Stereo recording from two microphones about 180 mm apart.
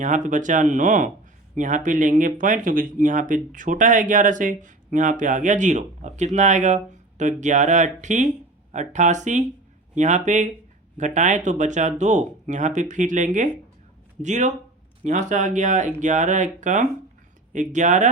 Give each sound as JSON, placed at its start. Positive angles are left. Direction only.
{"t": 0.0, "sound": "speech", "side_deg": -45}